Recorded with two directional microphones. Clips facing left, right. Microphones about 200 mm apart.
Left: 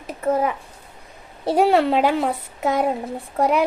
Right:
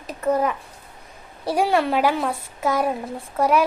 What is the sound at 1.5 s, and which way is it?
A woman's voice, 25° left (ahead or behind).